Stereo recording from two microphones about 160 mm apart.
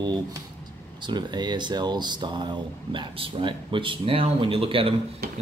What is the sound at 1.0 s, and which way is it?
Speech, 25° right (ahead or behind).